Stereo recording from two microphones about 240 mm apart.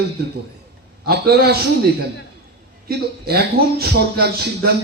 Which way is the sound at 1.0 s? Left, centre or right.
Right.